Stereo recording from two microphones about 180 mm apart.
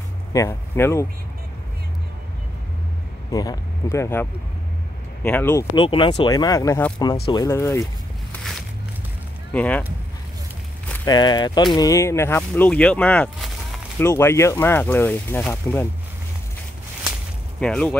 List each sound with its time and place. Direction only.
0.3 s speech: 15° left (ahead or behind)
3.3 s speech: 20° left (ahead or behind)
5.8 s speech: 25° left (ahead or behind)
8.3 s a sound: centre (ahead or behind)
9.5 s speech: 10° left (ahead or behind)
11.1 s speech: 25° left (ahead or behind)
17.6 s speech: 5° left (ahead or behind)